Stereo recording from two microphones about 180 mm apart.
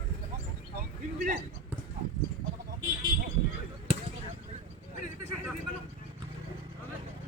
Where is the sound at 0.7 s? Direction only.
50° right (ahead or behind).